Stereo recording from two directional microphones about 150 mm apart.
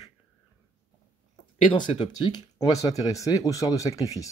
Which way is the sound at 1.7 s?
30° left (ahead or behind).